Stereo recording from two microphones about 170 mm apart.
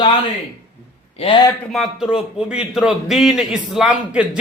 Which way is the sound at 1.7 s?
Centre (ahead or behind).